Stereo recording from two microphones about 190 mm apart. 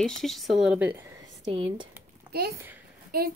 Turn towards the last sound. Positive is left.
turn(degrees=-55)  # may be behind; listen again after turning